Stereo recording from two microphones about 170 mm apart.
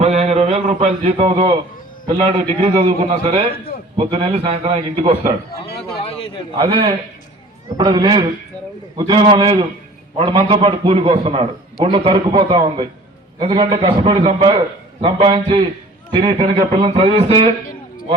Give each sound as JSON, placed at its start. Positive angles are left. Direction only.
{"t": 0.0, "sound": "a man's voice", "side_deg": -40}
{"t": 6.0, "sound": "a sound", "side_deg": 35}
{"t": 6.7, "sound": "a man's voice", "side_deg": -30}